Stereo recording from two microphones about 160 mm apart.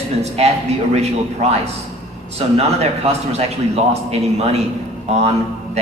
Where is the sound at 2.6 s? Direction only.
40° right (ahead or behind).